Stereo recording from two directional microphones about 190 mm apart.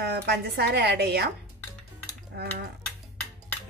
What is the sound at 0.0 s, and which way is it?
A woman's voice, 60° right (ahead or behind).